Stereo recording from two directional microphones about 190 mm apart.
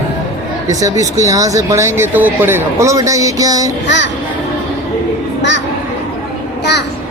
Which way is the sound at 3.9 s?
70° left (ahead or behind).